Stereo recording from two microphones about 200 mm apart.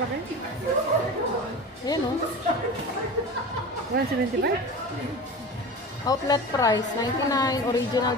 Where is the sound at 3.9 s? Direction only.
50° right (ahead or behind).